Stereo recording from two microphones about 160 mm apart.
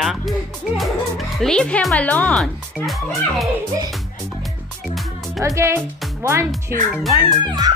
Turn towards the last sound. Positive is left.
turn(degrees=-25)  # may be behind; listen again after turning